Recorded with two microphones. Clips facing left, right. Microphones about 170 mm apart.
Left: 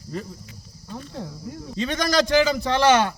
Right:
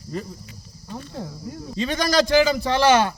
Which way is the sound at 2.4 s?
10° right (ahead or behind).